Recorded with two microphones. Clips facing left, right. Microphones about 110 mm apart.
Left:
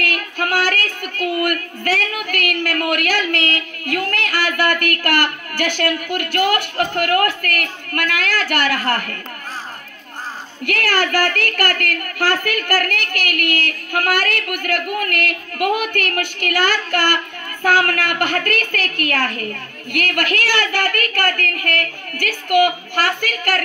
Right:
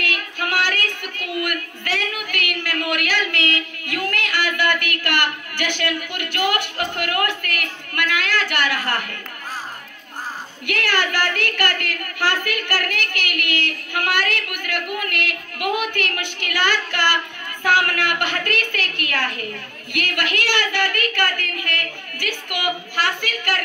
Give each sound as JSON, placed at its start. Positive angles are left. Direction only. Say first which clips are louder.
{"t": 0.0, "sound": "child singing", "louder": "left 4 dB", "side_deg": 45}
{"t": 10.6, "sound": "a woman's voice", "louder": "left 3 dB", "side_deg": 45}